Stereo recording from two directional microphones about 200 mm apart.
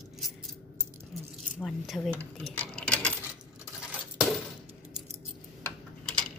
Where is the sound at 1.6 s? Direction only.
Centre (ahead or behind).